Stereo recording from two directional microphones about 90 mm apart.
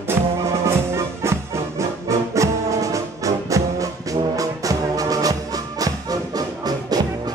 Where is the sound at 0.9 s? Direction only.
30° right (ahead or behind).